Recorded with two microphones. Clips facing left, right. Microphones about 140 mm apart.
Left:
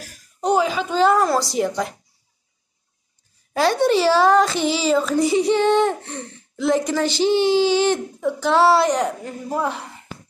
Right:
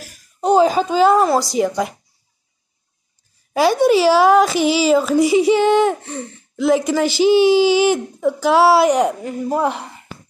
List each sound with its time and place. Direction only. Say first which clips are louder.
0.4 s a sound: right 5 dB; 25° right (ahead or behind)
1.0 s a woman's voice: right 2 dB; 20° right (ahead or behind)
3.5 s a woman's voice: right 4 dB; 10° right (ahead or behind)